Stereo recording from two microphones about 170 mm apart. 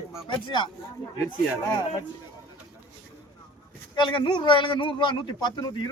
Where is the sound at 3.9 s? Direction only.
25° left (ahead or behind).